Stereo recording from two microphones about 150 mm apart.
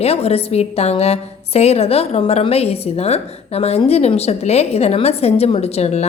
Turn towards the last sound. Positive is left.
turn(degrees=45)  # may be behind; listen again after turning